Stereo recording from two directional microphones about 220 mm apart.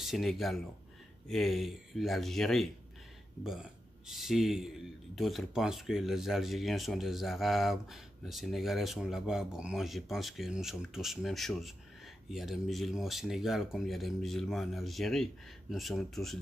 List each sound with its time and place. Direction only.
0.0 s speech: centre (ahead or behind)
4.1 s speech: centre (ahead or behind)